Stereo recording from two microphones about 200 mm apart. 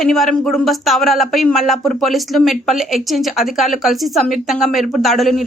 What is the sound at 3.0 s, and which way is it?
A woman's voice, centre (ahead or behind).